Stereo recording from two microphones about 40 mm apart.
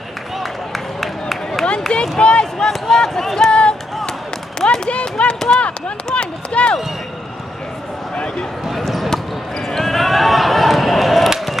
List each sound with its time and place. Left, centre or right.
0.4 s a sound: centre
1.9 s speech: left
2.6 s speech: centre
3.5 s music: left
4.6 s speech: left
8.6 s basketball bounce: centre
9.1 s basketball bounce: centre